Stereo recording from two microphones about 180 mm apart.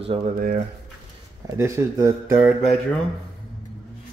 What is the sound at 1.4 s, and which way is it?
Speech, 15° right (ahead or behind).